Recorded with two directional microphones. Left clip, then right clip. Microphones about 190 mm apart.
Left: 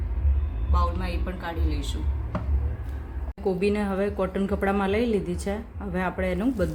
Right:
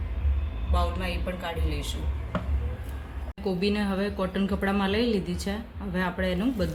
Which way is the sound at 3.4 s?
30° left (ahead or behind).